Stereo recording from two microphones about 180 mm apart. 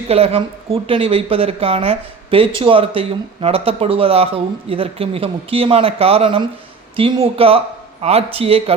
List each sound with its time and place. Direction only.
0.1 s speech: 35° right (ahead or behind)